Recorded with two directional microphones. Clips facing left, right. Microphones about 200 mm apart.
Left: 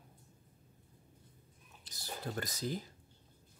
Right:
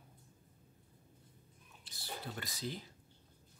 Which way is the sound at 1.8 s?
40° left (ahead or behind).